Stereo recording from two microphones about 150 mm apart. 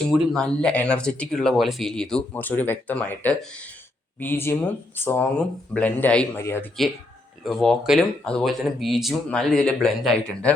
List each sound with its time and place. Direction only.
0.3 s speech: 5° left (ahead or behind)
7.4 s speech: centre (ahead or behind)